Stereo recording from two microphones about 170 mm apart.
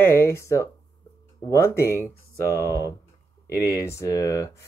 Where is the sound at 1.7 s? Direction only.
15° left (ahead or behind).